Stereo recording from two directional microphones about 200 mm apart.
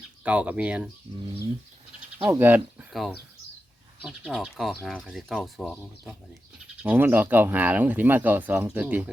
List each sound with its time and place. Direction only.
0.3 s speech: 5° right (ahead or behind)
1.1 s speech: 20° right (ahead or behind)
2.1 s speech: 10° right (ahead or behind)
6.8 s speech: 10° right (ahead or behind)